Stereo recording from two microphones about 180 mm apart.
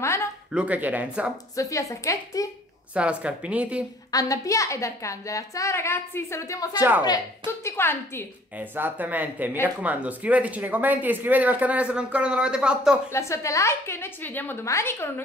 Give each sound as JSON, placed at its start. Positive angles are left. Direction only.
{"t": 0.0, "sound": "a sound", "side_deg": 15}
{"t": 0.5, "sound": "speech", "side_deg": -5}
{"t": 1.6, "sound": "a woman's voice", "side_deg": 15}
{"t": 2.9, "sound": "speech", "side_deg": -5}
{"t": 4.1, "sound": "a woman's voice", "side_deg": 20}
{"t": 8.5, "sound": "speech", "side_deg": -10}
{"t": 13.1, "sound": "a woman's voice", "side_deg": 15}